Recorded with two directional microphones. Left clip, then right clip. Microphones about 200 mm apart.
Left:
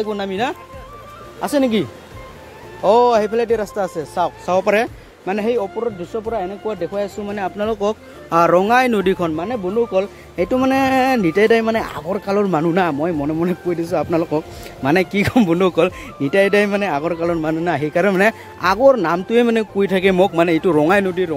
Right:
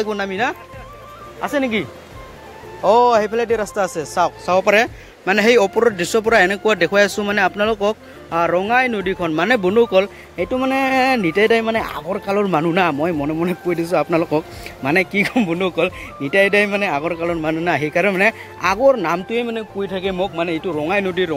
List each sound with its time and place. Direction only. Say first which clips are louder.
0.0 s speech: right 1 dB; 10° left (ahead or behind)
1.4 s speech: left 2 dB; 35° left (ahead or behind)
2.8 s speech: even; 20° left (ahead or behind); by 5.6 s centre (ahead or behind)
5.9 s speech: right 9 dB; 20° right (ahead or behind); by 8.0 s 10° left (ahead or behind)
8.3 s speech: left 4 dB; 25° left (ahead or behind)
9.3 s speech: right 5 dB; 5° right (ahead or behind)
10.3 s speech: left 3 dB; 15° left (ahead or behind)
14.9 s speech: even; 15° left (ahead or behind)
19.4 s speech: left 7 dB; 40° left (ahead or behind)
21.0 s speech: even; 10° left (ahead or behind)